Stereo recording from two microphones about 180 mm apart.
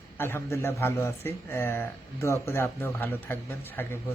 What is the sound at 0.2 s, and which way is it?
Speech, 15° left (ahead or behind).